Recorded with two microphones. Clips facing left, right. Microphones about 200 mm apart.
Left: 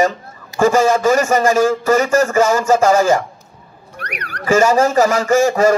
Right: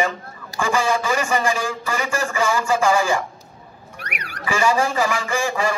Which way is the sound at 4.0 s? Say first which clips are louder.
Left 6 dB; 10° right (ahead or behind).